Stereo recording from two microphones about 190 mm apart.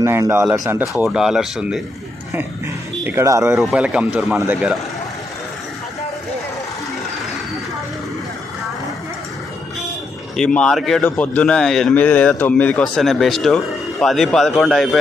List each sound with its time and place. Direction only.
0.0 s a man's voice: 15° right (ahead or behind)
3.0 s a man's voice: 10° right (ahead or behind)
3.7 s a man's voice: 5° right (ahead or behind)
10.3 s a man's voice: 5° left (ahead or behind)